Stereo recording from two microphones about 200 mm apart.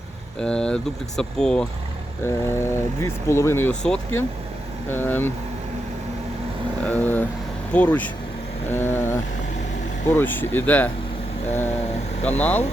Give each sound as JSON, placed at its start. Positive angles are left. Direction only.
{"t": 0.3, "sound": "speech", "side_deg": 5}
{"t": 6.8, "sound": "speech", "side_deg": 10}
{"t": 12.4, "sound": "speech", "side_deg": 5}